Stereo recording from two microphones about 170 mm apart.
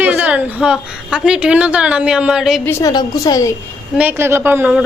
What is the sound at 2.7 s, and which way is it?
Speech, 20° left (ahead or behind).